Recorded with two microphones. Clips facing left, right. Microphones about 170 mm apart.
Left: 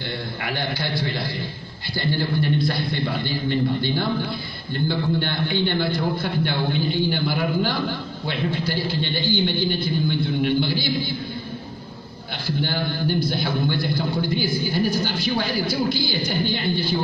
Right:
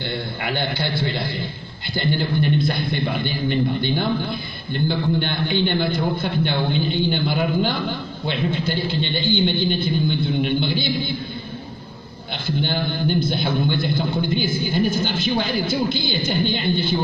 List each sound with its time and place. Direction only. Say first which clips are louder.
0.4 s a man's voice: right 2 dB; 25° right (ahead or behind)
12.4 s a man's voice: right 2 dB; 20° right (ahead or behind)